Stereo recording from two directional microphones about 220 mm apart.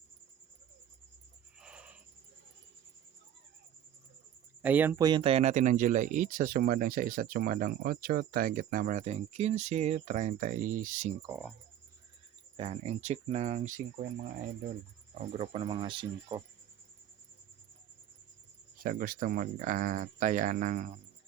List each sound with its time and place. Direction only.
1.6 s owl: 5° right (ahead or behind)
4.6 s speech: 10° right (ahead or behind); by 11.1 s 35° right (ahead or behind)
12.5 s speech: 25° right (ahead or behind)
15.2 s speech: 30° right (ahead or behind)
18.8 s speech: 40° right (ahead or behind)